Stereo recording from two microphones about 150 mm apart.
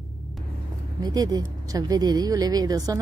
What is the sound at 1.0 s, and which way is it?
Speech, 25° right (ahead or behind).